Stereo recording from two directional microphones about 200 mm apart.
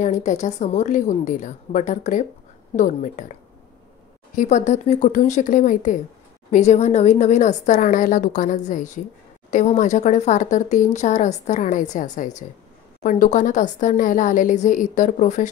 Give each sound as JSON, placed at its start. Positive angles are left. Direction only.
{"t": 0.0, "sound": "speech", "side_deg": 35}
{"t": 4.4, "sound": "speech", "side_deg": 40}